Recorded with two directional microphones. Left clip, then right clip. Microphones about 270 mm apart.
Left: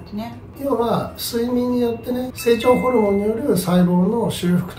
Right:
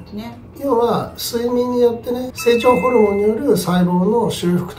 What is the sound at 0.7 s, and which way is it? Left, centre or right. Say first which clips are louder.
Speech: right 4 dB; centre.